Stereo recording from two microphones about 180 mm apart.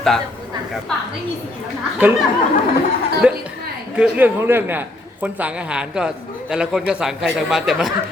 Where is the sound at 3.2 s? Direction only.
5° right (ahead or behind).